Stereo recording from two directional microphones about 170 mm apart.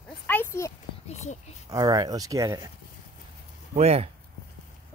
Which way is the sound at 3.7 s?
35° right (ahead or behind).